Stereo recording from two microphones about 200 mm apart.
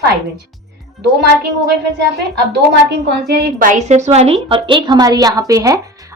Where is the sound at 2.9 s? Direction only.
55° right (ahead or behind).